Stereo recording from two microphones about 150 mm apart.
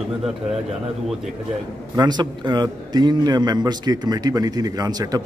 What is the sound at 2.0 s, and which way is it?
A man's voice, 30° right (ahead or behind).